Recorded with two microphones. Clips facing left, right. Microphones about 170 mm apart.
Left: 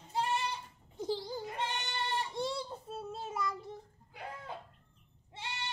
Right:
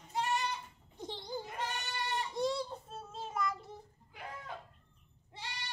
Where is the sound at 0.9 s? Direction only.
5° left (ahead or behind).